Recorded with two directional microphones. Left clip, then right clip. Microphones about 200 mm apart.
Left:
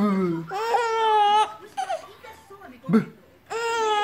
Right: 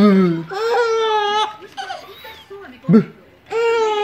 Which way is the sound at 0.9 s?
35° left (ahead or behind).